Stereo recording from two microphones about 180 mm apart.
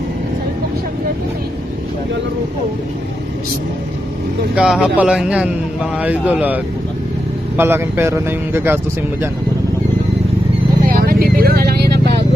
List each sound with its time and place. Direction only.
4.5 s a man's voice: 5° right (ahead or behind)
10.8 s vehicle: 55° right (ahead or behind)